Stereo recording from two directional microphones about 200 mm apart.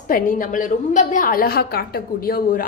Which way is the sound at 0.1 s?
45° left (ahead or behind).